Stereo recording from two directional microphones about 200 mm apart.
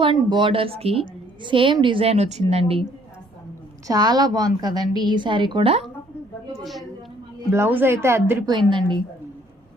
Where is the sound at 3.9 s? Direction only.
20° right (ahead or behind).